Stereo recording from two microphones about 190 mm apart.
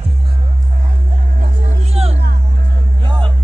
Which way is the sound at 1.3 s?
35° right (ahead or behind).